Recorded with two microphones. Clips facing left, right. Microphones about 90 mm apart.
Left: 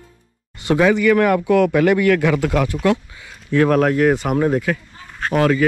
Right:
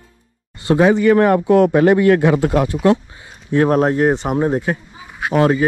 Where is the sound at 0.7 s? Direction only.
30° right (ahead or behind).